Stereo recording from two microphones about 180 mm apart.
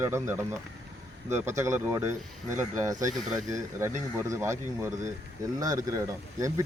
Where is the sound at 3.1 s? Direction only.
Centre (ahead or behind).